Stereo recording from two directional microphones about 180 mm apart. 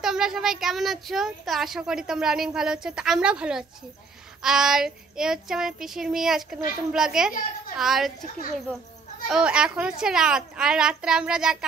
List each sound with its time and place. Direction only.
0.0 s child singing: 5° right (ahead or behind)
9.3 s child singing: 5° right (ahead or behind)